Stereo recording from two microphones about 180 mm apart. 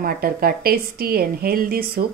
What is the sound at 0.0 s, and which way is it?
A woman's voice, 55° right (ahead or behind).